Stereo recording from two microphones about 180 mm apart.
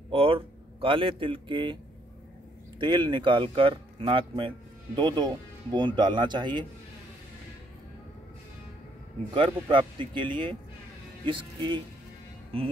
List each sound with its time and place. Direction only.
0.1 s a man's voice: 30° right (ahead or behind)
2.8 s speech: 25° right (ahead or behind)
9.3 s speech: 30° right (ahead or behind)